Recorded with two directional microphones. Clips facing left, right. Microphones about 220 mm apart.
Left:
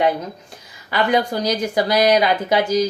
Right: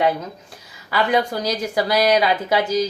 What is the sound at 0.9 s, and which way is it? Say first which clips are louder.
Speech: left 1 dB; 5° right (ahead or behind).